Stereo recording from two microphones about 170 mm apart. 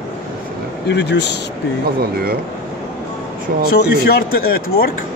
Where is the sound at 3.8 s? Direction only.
65° left (ahead or behind).